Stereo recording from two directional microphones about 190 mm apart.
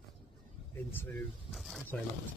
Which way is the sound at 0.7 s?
10° left (ahead or behind).